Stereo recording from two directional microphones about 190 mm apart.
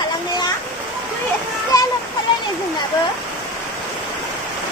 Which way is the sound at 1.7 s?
20° left (ahead or behind).